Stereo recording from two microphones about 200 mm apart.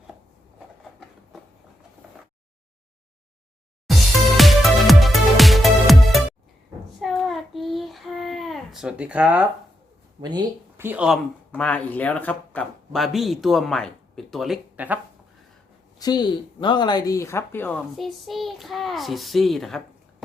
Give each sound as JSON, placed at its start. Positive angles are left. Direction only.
{"t": 4.4, "sound": "music", "side_deg": 0}
{"t": 7.0, "sound": "child singing", "side_deg": 0}
{"t": 10.2, "sound": "speech", "side_deg": -20}
{"t": 11.5, "sound": "a man's voice", "side_deg": 5}
{"t": 16.0, "sound": "speech", "side_deg": 20}
{"t": 17.9, "sound": "a man's voice", "side_deg": 0}